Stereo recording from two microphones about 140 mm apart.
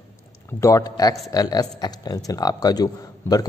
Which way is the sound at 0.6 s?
25° left (ahead or behind).